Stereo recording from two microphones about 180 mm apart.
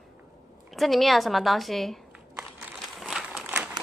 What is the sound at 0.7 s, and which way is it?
A woman's voice, centre (ahead or behind).